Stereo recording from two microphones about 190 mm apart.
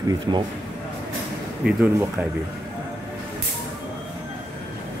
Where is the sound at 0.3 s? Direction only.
20° right (ahead or behind).